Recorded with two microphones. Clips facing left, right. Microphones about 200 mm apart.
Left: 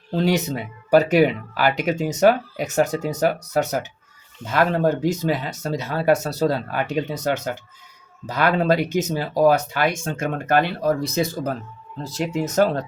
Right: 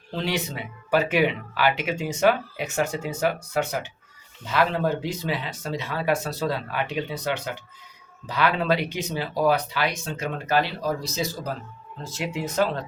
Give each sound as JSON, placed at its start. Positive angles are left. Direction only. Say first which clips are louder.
{"t": 0.1, "sound": "speech", "louder": "left 7 dB", "side_deg": 40}
{"t": 12.0, "sound": "speech", "louder": "left 5 dB", "side_deg": 40}